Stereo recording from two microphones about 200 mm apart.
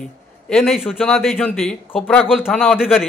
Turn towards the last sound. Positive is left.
turn(degrees=0)  # may be behind; listen again after turning